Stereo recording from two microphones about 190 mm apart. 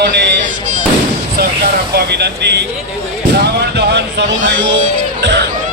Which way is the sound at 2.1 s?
60° right (ahead or behind).